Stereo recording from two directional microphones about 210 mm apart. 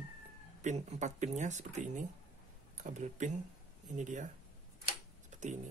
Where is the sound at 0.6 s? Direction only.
35° right (ahead or behind).